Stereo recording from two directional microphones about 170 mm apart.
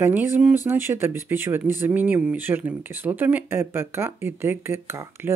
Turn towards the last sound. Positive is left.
turn(degrees=-15)  # may be behind; listen again after turning